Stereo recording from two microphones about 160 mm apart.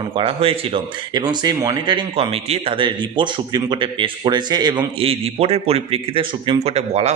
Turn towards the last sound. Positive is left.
turn(degrees=-40)  # may be behind; listen again after turning